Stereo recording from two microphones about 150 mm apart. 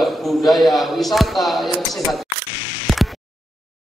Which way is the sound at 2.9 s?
Centre (ahead or behind).